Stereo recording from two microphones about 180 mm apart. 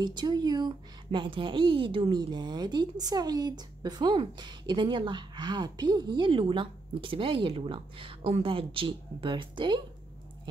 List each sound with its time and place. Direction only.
0.0 s a woman's voice: 25° right (ahead or behind)